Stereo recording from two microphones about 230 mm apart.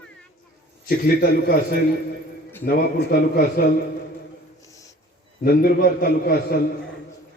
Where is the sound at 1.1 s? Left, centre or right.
Left.